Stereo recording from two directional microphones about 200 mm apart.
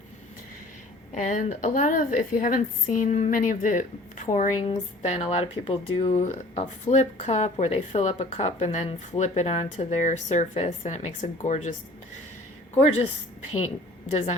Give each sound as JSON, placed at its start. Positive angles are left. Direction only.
{"t": 1.1, "sound": "a woman's voice", "side_deg": 35}
{"t": 14.1, "sound": "a woman's voice", "side_deg": 35}